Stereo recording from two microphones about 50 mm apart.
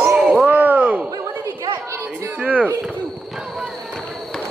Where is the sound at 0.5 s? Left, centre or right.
Right.